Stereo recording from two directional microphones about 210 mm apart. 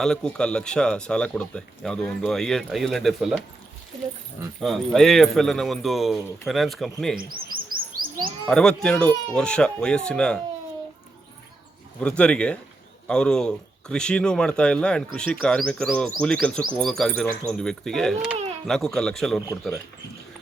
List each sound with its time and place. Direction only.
0.0 s a man's voice: 5° left (ahead or behind)
4.6 s a man's voice: centre (ahead or behind)
7.2 s chirp: 45° right (ahead or behind)
8.4 s a man's voice: 5° left (ahead or behind)
11.9 s a man's voice: 5° left (ahead or behind)
18.3 s a sound: 30° right (ahead or behind)
18.7 s a man's voice: centre (ahead or behind)